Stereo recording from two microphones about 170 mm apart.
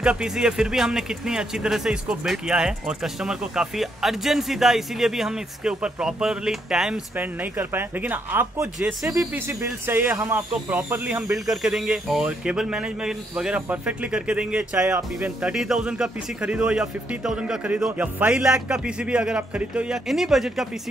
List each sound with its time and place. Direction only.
0.0 s speech: 5° right (ahead or behind)